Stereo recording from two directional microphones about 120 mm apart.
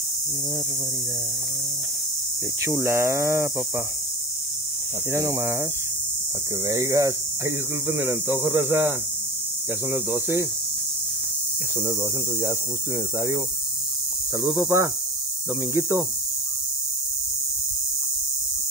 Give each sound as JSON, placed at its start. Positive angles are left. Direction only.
{"t": 2.6, "sound": "speech", "side_deg": -25}
{"t": 5.1, "sound": "speech", "side_deg": -25}
{"t": 6.6, "sound": "speech", "side_deg": -30}
{"t": 11.8, "sound": "speech", "side_deg": -25}
{"t": 14.4, "sound": "speech", "side_deg": -25}